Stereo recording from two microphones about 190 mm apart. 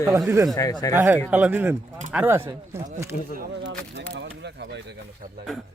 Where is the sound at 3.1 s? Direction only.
50° left (ahead or behind).